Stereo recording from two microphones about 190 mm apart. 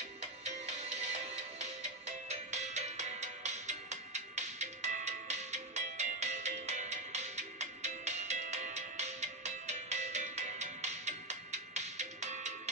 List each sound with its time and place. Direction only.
2.2 s music: 35° right (ahead or behind)